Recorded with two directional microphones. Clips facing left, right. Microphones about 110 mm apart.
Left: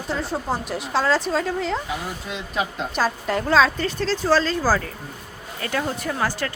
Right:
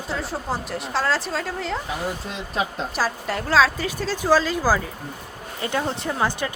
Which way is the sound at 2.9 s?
Centre (ahead or behind).